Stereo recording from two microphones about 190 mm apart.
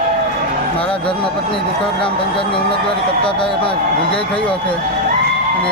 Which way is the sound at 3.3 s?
25° left (ahead or behind).